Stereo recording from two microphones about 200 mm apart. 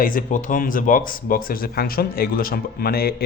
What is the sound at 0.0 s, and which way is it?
Speech, 45° left (ahead or behind).